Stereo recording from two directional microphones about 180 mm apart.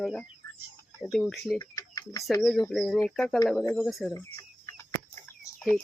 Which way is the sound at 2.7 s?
Centre (ahead or behind).